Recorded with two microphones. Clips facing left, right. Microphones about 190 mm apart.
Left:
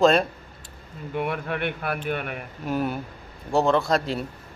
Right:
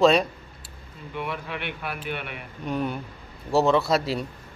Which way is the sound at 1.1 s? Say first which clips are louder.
Left 5 dB; 50° left (ahead or behind).